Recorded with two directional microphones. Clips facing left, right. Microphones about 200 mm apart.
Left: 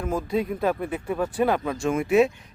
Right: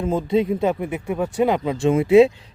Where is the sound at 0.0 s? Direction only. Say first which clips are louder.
Right 6 dB; 25° right (ahead or behind).